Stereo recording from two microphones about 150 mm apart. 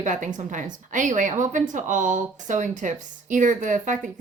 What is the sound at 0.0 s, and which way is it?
A woman's voice, 55° right (ahead or behind).